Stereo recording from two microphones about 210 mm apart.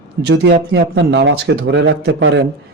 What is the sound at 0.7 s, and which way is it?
Speech, 60° right (ahead or behind).